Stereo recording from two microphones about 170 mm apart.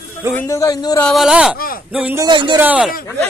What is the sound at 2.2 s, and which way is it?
Speech, 25° right (ahead or behind).